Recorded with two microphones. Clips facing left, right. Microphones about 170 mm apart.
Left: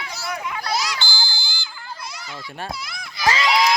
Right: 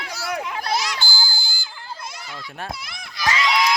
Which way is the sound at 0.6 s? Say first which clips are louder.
Left 1 dB; 50° right (ahead or behind).